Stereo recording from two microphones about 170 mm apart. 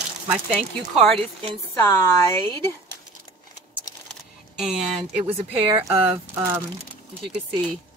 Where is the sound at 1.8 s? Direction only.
15° left (ahead or behind).